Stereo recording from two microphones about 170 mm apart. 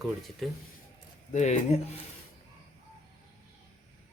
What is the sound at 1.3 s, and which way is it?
Speech, 45° left (ahead or behind).